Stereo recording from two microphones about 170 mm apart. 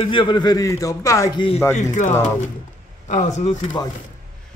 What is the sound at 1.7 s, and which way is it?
Speech, 45° left (ahead or behind).